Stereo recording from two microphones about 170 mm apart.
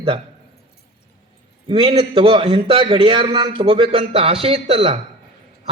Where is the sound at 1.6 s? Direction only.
30° right (ahead or behind).